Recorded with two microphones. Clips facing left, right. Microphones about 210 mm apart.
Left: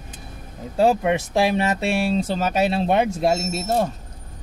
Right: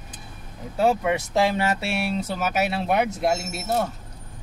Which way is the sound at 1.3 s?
15° left (ahead or behind).